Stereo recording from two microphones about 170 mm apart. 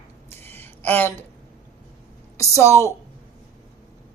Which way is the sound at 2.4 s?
15° left (ahead or behind).